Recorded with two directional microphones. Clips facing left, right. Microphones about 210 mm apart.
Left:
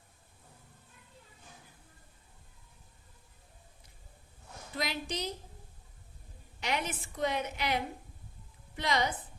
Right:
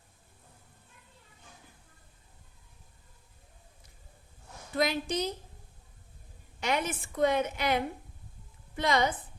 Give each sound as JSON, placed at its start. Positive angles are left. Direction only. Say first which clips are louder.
{"t": 4.8, "sound": "a woman's voice", "louder": "right 7 dB", "side_deg": -50}
{"t": 6.6, "sound": "a woman's voice", "louder": "right 4 dB", "side_deg": -50}